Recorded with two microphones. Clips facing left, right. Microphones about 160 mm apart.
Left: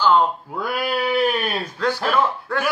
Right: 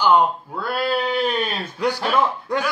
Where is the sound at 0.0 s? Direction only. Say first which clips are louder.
Right 1 dB; 15° right (ahead or behind).